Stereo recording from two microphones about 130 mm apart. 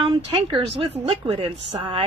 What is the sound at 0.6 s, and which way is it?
A woman's voice, 50° right (ahead or behind).